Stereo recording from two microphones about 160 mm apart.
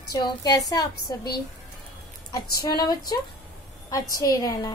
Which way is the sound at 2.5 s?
25° left (ahead or behind).